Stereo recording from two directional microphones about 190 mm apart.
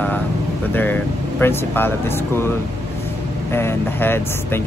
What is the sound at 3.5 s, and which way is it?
Speech, 10° left (ahead or behind).